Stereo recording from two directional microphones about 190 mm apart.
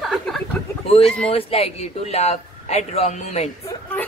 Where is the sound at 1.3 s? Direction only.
30° left (ahead or behind).